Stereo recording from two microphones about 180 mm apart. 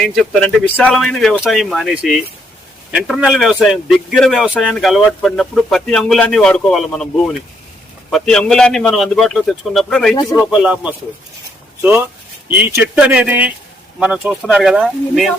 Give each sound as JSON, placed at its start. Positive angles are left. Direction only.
{"t": 0.0, "sound": "speech", "side_deg": 0}
{"t": 8.1, "sound": "speech", "side_deg": 5}
{"t": 10.2, "sound": "speech", "side_deg": 20}
{"t": 10.5, "sound": "speech", "side_deg": -5}